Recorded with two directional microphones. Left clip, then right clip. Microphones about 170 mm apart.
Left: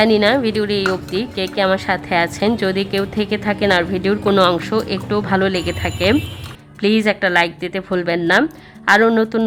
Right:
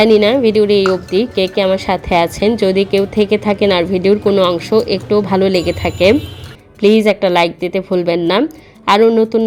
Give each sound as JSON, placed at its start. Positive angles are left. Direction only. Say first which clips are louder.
{"t": 0.0, "sound": "speech", "louder": "right 4 dB", "side_deg": 35}